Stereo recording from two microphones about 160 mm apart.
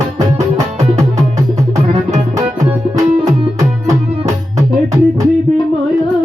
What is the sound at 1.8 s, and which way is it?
Music, 45° right (ahead or behind).